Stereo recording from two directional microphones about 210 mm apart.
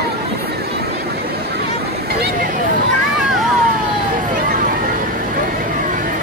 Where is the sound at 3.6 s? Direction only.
40° right (ahead or behind).